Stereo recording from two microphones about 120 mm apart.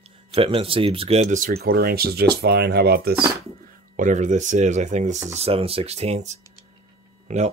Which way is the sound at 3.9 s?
90° right.